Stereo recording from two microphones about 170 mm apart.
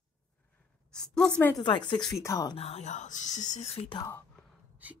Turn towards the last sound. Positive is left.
turn(degrees=35)  # may be behind; listen again after turning